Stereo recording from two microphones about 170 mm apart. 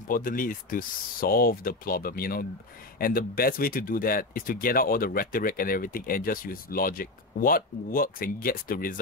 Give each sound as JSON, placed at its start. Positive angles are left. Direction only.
{"t": 0.1, "sound": "speech", "side_deg": 55}